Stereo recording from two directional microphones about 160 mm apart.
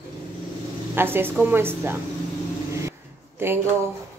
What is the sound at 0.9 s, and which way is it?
A woman's voice, 15° right (ahead or behind).